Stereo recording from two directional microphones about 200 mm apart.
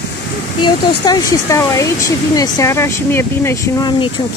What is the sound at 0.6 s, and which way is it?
Speech, 20° left (ahead or behind).